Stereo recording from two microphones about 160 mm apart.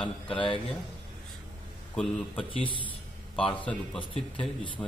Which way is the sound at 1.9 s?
Centre (ahead or behind).